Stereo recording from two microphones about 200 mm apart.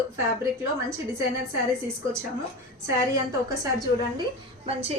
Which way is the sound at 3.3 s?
15° right (ahead or behind).